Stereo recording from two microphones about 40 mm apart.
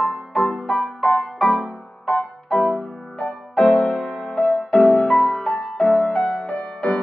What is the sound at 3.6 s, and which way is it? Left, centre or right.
Music, left.